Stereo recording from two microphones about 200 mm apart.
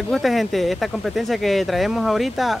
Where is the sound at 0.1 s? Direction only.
Centre (ahead or behind).